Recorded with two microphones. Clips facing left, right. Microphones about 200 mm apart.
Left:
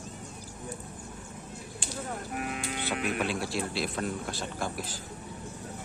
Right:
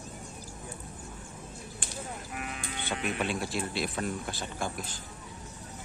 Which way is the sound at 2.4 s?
55° left (ahead or behind).